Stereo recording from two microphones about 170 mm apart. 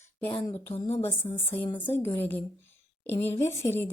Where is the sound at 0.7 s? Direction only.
35° left (ahead or behind).